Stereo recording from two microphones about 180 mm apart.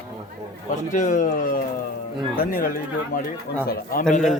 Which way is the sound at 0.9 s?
45° left (ahead or behind).